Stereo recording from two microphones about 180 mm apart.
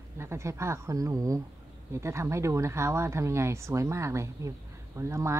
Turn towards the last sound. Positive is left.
turn(degrees=-15)  # may be behind; listen again after turning